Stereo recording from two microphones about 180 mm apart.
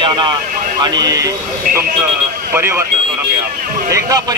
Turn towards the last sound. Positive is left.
turn(degrees=-20)  # may be behind; listen again after turning